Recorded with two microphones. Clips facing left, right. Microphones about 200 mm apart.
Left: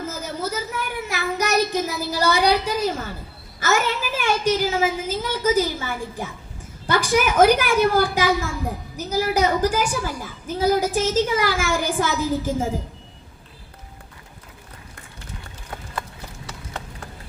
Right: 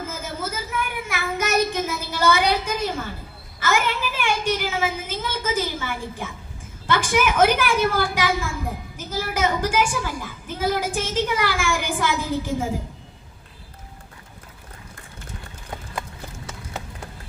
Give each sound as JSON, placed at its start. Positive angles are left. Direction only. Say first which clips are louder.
{"t": 0.7, "sound": "child singing", "louder": "even", "side_deg": 40}
{"t": 3.6, "sound": "a woman's voice", "louder": "left 1 dB", "side_deg": 45}